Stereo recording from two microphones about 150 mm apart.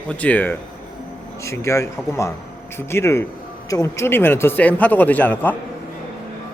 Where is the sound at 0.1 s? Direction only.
10° left (ahead or behind).